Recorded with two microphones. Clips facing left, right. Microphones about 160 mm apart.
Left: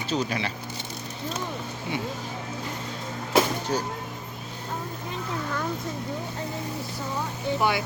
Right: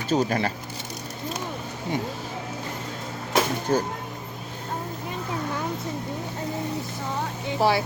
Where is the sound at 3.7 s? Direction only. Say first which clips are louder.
Right 9 dB; 50° right (ahead or behind).